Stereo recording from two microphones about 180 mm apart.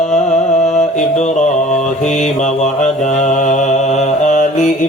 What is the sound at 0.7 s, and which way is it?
Mantra, 40° left (ahead or behind).